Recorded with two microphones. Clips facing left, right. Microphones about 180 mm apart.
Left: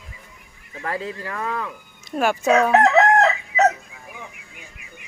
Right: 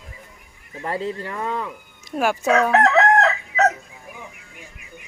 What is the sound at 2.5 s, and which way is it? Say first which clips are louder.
Chicken: left 1 dB; 10° left (ahead or behind).